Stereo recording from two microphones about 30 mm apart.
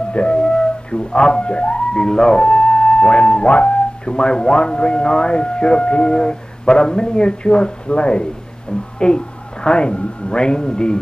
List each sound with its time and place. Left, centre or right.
0.1 s music: left
2.0 s speech: left
4.1 s speech: left
6.1 s a woman's voice: left